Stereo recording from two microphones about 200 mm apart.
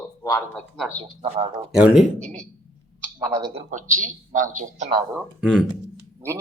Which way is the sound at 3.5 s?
40° right (ahead or behind).